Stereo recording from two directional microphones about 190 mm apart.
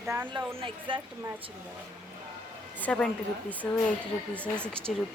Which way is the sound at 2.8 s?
5° left (ahead or behind).